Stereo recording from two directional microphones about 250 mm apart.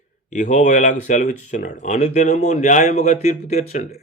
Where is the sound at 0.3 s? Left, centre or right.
Left.